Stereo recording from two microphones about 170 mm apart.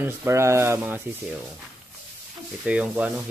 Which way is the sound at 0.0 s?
15° right (ahead or behind).